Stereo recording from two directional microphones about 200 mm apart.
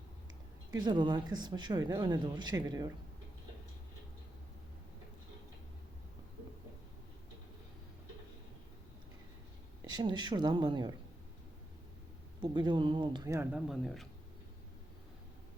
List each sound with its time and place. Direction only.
0.7 s speech: 20° right (ahead or behind)
9.9 s speech: 20° right (ahead or behind)
12.4 s speech: 25° right (ahead or behind); by 14.1 s centre (ahead or behind)